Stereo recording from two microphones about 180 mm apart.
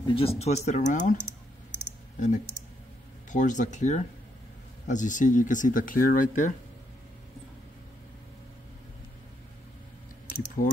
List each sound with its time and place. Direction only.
0.0 s speech: 30° left (ahead or behind)
2.1 s speech: 40° left (ahead or behind)